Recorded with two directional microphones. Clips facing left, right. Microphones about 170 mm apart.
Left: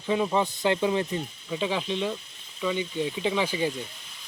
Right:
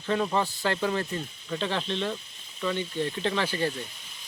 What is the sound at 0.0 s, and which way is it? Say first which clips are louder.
Speech: left 2 dB; 10° left (ahead or behind).